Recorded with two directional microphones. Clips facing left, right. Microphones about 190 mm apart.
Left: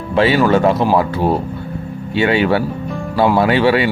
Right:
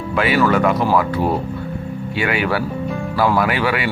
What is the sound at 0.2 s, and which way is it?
Speech, 25° left (ahead or behind).